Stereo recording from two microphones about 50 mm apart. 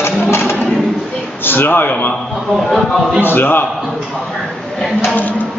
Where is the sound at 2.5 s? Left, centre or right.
Centre.